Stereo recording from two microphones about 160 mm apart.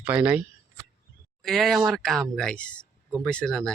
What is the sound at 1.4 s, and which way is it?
Speech, centre (ahead or behind).